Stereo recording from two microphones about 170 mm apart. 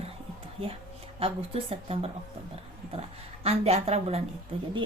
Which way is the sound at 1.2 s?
35° right (ahead or behind).